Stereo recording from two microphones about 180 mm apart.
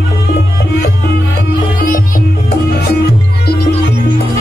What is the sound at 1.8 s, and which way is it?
Music, 50° left (ahead or behind).